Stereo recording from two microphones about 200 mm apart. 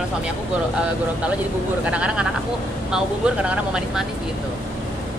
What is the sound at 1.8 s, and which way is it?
Speech, 5° right (ahead or behind).